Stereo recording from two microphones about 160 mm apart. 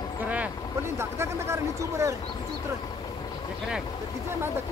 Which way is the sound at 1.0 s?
15° right (ahead or behind).